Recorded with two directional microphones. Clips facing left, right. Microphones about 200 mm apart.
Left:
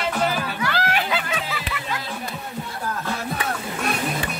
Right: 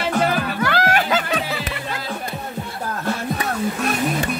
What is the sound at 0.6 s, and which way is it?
Music, 50° right (ahead or behind).